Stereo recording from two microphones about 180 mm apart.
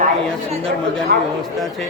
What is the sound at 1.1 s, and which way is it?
Speech, 70° right (ahead or behind).